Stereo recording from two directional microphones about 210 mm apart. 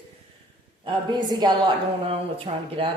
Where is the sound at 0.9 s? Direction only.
20° right (ahead or behind).